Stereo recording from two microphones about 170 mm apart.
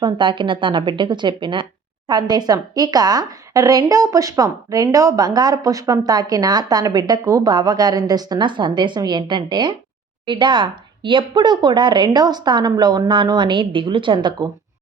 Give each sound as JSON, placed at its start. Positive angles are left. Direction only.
{"t": 0.0, "sound": "a woman's voice", "side_deg": -30}